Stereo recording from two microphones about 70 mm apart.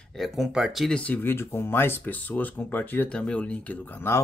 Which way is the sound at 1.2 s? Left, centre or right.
Left.